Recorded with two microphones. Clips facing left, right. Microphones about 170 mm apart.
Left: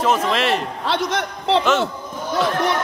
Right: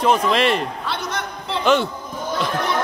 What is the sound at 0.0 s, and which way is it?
Speech, 5° left (ahead or behind).